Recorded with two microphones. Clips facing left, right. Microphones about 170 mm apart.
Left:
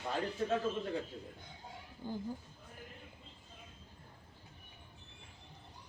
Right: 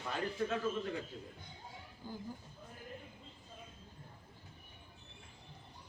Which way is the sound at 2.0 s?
20° left (ahead or behind).